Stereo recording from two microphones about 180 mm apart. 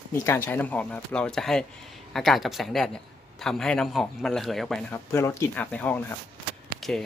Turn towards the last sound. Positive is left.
turn(degrees=0)  # may be behind; listen again after turning